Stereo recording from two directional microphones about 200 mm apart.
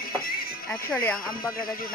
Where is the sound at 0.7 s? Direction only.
10° left (ahead or behind).